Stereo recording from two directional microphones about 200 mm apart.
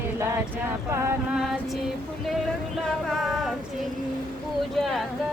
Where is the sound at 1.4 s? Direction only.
Centre (ahead or behind).